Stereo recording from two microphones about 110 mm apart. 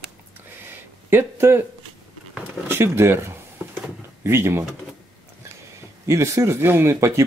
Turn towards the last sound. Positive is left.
turn(degrees=-25)  # may be behind; listen again after turning